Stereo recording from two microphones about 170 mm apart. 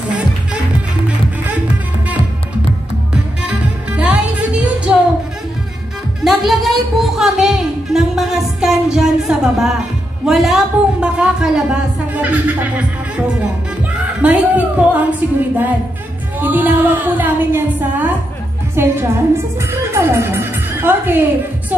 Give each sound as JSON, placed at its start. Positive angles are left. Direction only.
{"t": 3.4, "sound": "music", "side_deg": -5}
{"t": 6.2, "sound": "music", "side_deg": 0}
{"t": 10.2, "sound": "a woman's voice", "side_deg": 0}
{"t": 13.9, "sound": "a woman's voice", "side_deg": -10}